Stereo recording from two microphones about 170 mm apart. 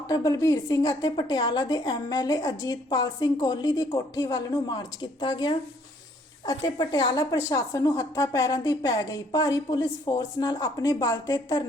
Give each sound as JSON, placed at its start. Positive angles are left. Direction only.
{"t": 0.1, "sound": "a woman's voice", "side_deg": 20}
{"t": 6.7, "sound": "a woman's voice", "side_deg": 25}